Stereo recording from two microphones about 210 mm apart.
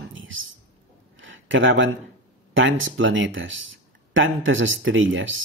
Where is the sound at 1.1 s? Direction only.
65° right (ahead or behind).